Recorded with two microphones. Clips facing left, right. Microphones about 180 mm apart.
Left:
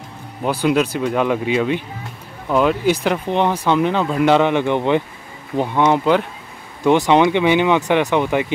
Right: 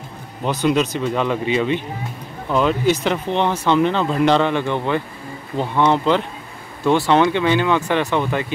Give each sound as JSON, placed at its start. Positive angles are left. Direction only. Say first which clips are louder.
{"t": 0.4, "sound": "speech", "louder": "left 1 dB", "side_deg": 10}